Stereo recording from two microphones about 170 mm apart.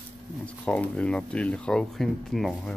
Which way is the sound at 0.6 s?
5° left (ahead or behind).